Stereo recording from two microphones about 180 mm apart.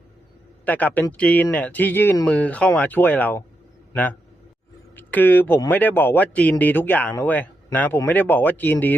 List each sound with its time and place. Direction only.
0.6 s speech: 10° left (ahead or behind)
4.9 s speech: 10° left (ahead or behind)